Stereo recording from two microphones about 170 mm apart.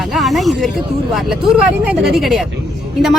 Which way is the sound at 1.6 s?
Centre (ahead or behind).